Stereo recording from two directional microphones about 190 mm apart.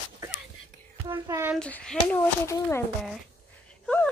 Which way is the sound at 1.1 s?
15° right (ahead or behind).